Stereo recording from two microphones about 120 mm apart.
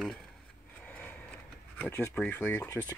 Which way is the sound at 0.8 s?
15° left (ahead or behind).